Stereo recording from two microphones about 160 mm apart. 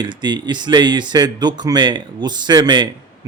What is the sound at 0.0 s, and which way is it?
Speech, 25° right (ahead or behind).